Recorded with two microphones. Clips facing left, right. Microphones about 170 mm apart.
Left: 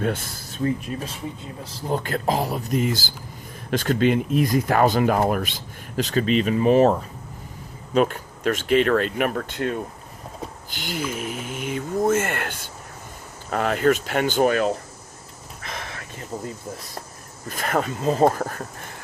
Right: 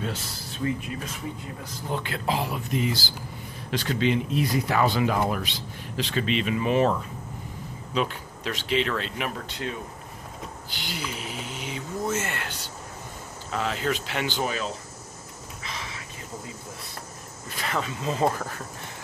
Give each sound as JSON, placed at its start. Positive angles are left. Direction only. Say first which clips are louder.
{"t": 0.0, "sound": "speech", "louder": "left 7 dB", "side_deg": 55}
{"t": 0.6, "sound": "speech", "louder": "left 4 dB", "side_deg": 30}
{"t": 7.9, "sound": "speech", "louder": "left 7 dB", "side_deg": 50}
{"t": 15.6, "sound": "a sound", "louder": "left 4 dB", "side_deg": 55}
{"t": 17.5, "sound": "speech", "louder": "left 6 dB", "side_deg": 50}